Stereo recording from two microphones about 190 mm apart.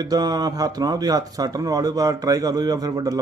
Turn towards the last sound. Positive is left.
turn(degrees=-20)  # may be behind; listen again after turning